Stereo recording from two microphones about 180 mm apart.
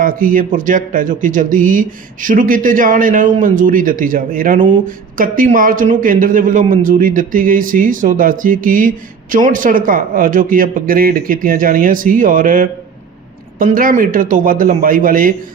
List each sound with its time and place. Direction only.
0.0 s speech: 50° right (ahead or behind)